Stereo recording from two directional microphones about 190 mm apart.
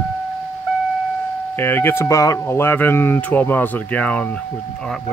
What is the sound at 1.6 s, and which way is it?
Speech, 10° left (ahead or behind).